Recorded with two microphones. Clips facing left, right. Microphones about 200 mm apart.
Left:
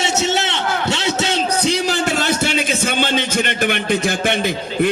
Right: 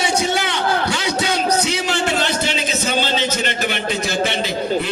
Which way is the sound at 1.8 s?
40° left (ahead or behind).